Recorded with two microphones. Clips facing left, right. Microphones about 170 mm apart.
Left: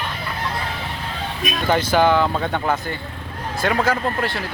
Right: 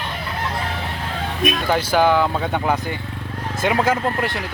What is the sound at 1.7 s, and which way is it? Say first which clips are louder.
Speech: left 1 dB; 5° right (ahead or behind).